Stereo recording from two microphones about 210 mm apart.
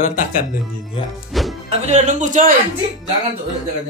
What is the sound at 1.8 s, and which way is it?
Speech, 35° right (ahead or behind).